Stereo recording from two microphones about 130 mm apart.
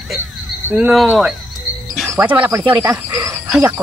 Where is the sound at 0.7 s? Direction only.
10° right (ahead or behind).